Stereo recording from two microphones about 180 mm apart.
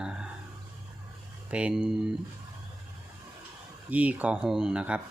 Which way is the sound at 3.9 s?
10° right (ahead or behind).